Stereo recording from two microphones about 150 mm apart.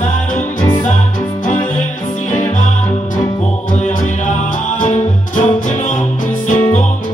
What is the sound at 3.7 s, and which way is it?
Music, 55° left (ahead or behind).